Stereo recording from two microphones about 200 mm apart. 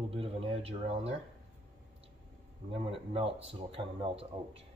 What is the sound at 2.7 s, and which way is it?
Speech, 30° right (ahead or behind).